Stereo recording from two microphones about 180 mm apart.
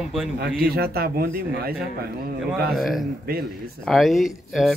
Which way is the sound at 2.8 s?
Centre (ahead or behind).